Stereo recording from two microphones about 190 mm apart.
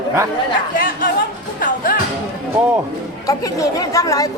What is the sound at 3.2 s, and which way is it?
A woman's voice, 20° left (ahead or behind).